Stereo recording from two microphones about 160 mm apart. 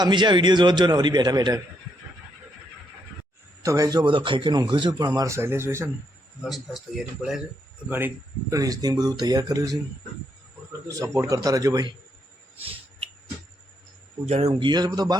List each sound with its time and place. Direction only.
0.0 s a man's voice: 30° right (ahead or behind)
3.6 s a man's voice: 20° right (ahead or behind)
6.4 s a man's voice: centre (ahead or behind); by 11.9 s 25° right (ahead or behind)
14.3 s speech: 45° right (ahead or behind)
14.6 s a man's voice: 25° right (ahead or behind)